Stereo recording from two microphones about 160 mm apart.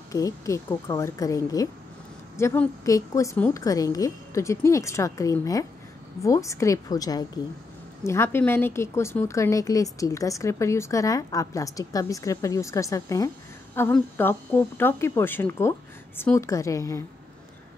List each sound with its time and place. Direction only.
0.1 s speech: 20° left (ahead or behind)